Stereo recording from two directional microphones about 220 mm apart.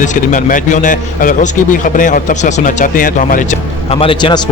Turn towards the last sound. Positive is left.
turn(degrees=20)  # may be behind; listen again after turning